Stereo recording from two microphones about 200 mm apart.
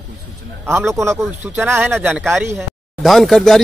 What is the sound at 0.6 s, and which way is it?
Speech, 10° right (ahead or behind).